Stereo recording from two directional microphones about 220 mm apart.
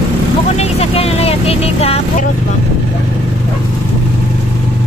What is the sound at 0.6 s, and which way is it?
Vehicle, 25° left (ahead or behind).